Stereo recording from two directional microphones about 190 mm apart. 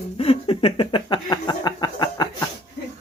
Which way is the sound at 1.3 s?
20° left (ahead or behind).